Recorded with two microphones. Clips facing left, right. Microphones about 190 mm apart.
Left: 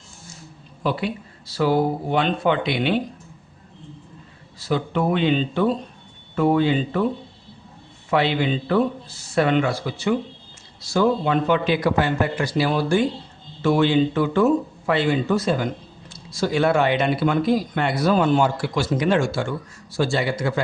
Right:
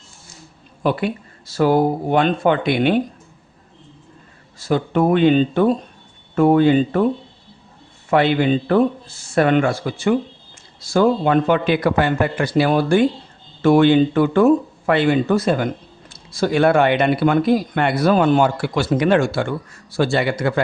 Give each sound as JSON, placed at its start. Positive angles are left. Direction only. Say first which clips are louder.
{"t": 0.8, "sound": "speech", "louder": "right 4 dB", "side_deg": -55}
{"t": 4.6, "sound": "speech", "louder": "right 5 dB", "side_deg": -50}
{"t": 8.1, "sound": "speech", "louder": "right 5 dB", "side_deg": -50}